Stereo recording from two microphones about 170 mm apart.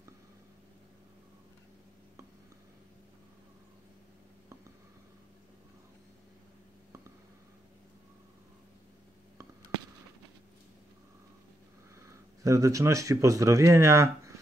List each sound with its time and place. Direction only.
12.4 s speech: 20° right (ahead or behind)